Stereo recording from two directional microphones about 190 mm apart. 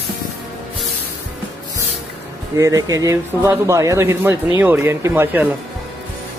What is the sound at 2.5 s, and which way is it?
Speech, 15° right (ahead or behind).